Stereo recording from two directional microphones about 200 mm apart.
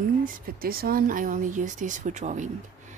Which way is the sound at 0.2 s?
50° right (ahead or behind).